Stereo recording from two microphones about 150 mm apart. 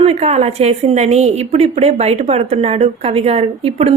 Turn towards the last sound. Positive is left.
turn(degrees=-45)  # may be behind; listen again after turning